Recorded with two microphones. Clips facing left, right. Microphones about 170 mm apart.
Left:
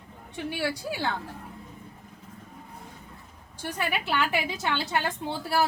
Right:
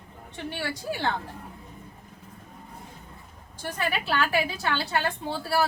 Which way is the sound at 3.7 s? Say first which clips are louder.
Right 1 dB; 15° left (ahead or behind).